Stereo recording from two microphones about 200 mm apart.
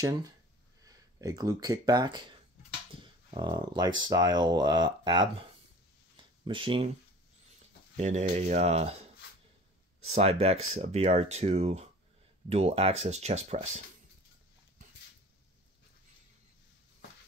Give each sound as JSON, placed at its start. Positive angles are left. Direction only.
{"t": 0.0, "sound": "speech", "side_deg": -20}
{"t": 3.3, "sound": "speech", "side_deg": -20}
{"t": 8.0, "sound": "speech", "side_deg": -35}
{"t": 10.0, "sound": "speech", "side_deg": -30}